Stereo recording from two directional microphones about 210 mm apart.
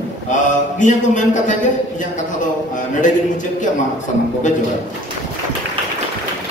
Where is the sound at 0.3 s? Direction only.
35° left (ahead or behind).